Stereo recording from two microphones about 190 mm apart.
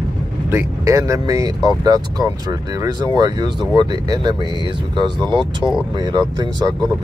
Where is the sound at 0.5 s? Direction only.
15° right (ahead or behind).